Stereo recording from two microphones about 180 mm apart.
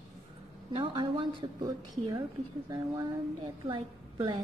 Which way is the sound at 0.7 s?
25° right (ahead or behind).